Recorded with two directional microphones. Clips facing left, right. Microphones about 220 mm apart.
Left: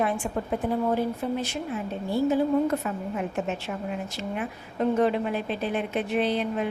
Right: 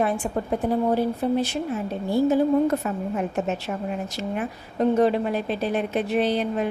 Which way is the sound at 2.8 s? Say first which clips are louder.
Right 3 dB; 45° right (ahead or behind).